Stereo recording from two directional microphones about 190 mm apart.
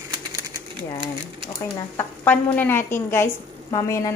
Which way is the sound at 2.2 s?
10° left (ahead or behind).